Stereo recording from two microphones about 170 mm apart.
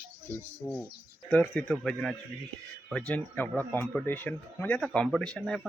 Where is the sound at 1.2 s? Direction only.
5° left (ahead or behind).